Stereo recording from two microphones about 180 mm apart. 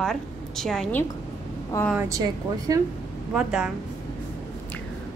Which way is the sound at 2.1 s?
20° right (ahead or behind).